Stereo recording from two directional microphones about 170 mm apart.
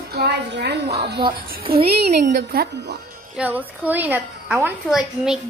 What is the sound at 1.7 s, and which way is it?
A woman's voice, 65° right (ahead or behind).